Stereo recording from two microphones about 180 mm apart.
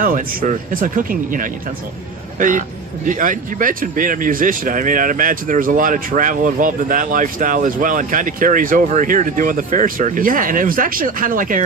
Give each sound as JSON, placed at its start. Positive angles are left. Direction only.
{"t": 0.0, "sound": "speech", "side_deg": -50}